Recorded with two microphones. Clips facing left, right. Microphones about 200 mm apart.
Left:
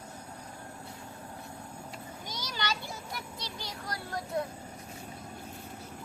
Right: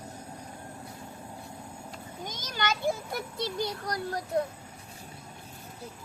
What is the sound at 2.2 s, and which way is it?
A child's voice, 50° right (ahead or behind).